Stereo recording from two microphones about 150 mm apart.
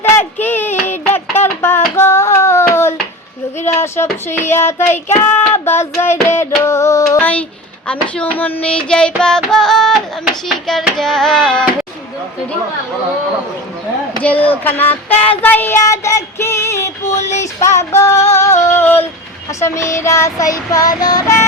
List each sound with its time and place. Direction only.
0.0 s a sound: 15° left (ahead or behind)
3.8 s child singing: 15° left (ahead or behind); by 10.0 s centre (ahead or behind)
10.4 s speech: centre (ahead or behind)
14.2 s child singing: 10° left (ahead or behind)
17.4 s female singing: 20° left (ahead or behind)
18.2 s a sound: 50° left (ahead or behind)
18.6 s female singing: 15° left (ahead or behind)
19.5 s child singing: 20° left (ahead or behind)